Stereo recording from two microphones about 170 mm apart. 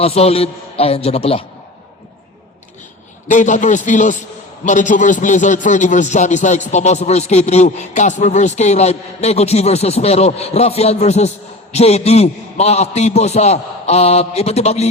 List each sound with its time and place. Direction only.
0.0 s a man's voice: 35° left (ahead or behind)
3.2 s a man's voice: 45° left (ahead or behind)